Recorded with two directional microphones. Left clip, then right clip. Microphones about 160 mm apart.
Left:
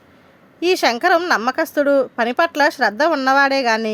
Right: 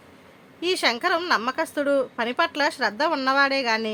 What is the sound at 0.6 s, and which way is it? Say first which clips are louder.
A woman's voice: left 7 dB; 40° left (ahead or behind).